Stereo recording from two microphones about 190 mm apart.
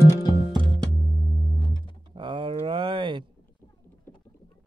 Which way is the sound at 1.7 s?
25° right (ahead or behind).